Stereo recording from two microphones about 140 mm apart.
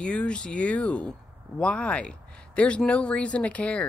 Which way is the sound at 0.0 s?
10° left (ahead or behind).